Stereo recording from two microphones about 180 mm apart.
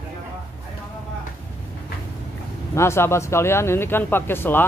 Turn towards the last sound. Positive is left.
turn(degrees=10)  # may be behind; listen again after turning